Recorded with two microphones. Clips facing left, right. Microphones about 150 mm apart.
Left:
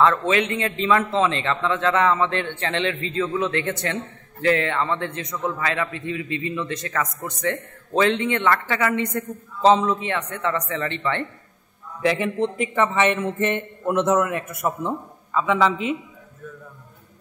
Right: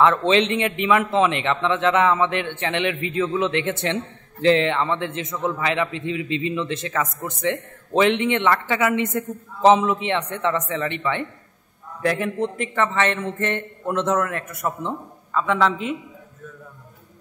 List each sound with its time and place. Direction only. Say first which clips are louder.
0.2 s a man's voice: right 3 dB; 25° right (ahead or behind)
12.0 s a man's voice: left 1 dB; centre (ahead or behind)